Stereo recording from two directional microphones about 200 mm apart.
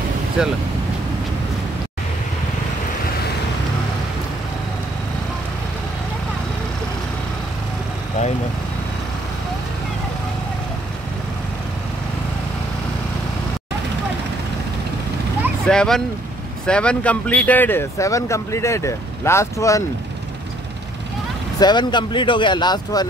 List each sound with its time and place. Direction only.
0.4 s speech: 5° right (ahead or behind)
15.6 s speech: 5° left (ahead or behind)
21.5 s speech: 20° left (ahead or behind)